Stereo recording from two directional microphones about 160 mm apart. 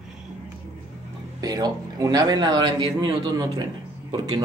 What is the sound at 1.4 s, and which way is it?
A man's voice, 25° right (ahead or behind).